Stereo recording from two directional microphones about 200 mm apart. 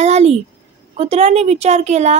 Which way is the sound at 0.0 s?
35° right (ahead or behind).